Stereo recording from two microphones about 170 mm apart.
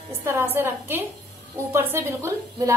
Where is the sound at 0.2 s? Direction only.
15° right (ahead or behind).